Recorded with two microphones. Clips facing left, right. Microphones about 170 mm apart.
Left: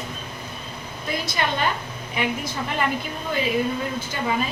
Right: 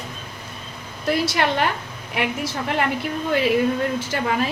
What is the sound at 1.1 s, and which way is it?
A woman's voice, 75° right (ahead or behind).